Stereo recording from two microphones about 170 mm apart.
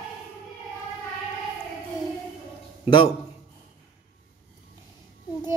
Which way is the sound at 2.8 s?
30° left (ahead or behind).